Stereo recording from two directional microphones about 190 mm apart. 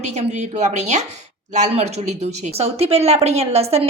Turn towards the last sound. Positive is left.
turn(degrees=-35)  # may be behind; listen again after turning